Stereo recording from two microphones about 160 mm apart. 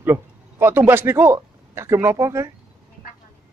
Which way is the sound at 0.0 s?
15° right (ahead or behind).